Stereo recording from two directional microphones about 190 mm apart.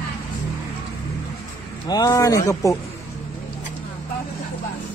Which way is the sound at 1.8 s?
20° left (ahead or behind).